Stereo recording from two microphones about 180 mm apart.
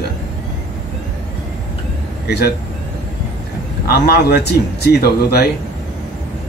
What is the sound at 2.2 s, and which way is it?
Speech, 65° left (ahead or behind).